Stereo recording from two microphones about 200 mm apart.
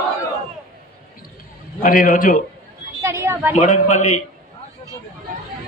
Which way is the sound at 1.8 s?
45° left (ahead or behind).